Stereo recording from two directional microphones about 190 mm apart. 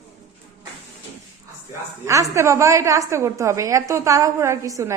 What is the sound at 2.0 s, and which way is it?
A woman's voice, 15° right (ahead or behind).